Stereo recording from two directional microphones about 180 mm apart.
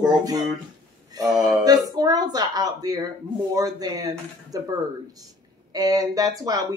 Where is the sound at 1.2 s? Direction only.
20° right (ahead or behind).